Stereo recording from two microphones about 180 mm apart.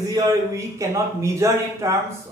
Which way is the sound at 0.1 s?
20° right (ahead or behind).